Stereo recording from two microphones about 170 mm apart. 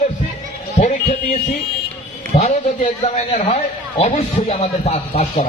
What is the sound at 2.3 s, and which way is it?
A man's voice, 50° left (ahead or behind).